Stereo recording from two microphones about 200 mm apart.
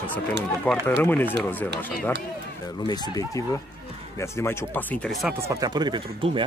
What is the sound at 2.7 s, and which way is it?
Speech, 20° left (ahead or behind).